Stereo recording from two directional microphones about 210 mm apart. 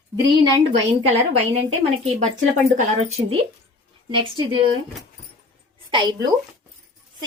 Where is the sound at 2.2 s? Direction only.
30° right (ahead or behind).